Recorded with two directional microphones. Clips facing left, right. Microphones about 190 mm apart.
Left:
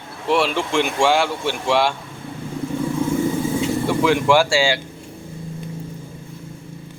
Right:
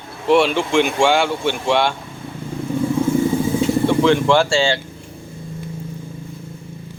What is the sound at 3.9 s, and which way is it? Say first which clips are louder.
Speech: even; 10° left (ahead or behind).